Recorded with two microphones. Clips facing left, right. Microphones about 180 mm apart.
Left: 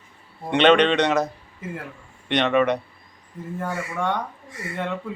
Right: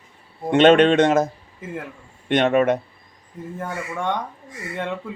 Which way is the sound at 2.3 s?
45° right (ahead or behind).